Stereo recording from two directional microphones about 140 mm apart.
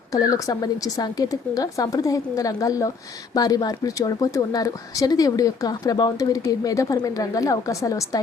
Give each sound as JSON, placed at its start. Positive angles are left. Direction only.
{"t": 0.1, "sound": "a woman's voice", "side_deg": 25}